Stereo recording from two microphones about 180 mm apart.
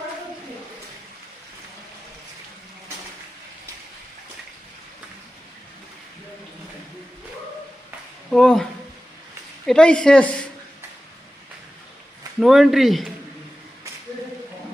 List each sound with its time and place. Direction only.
8.3 s speech: 5° left (ahead or behind)
9.6 s speech: 5° left (ahead or behind)
12.4 s speech: centre (ahead or behind)